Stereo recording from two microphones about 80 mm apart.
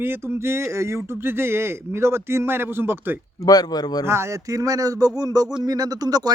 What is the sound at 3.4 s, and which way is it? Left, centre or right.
Speech, left.